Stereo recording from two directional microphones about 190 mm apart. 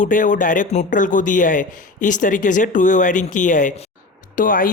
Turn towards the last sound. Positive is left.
turn(degrees=45)  # may be behind; listen again after turning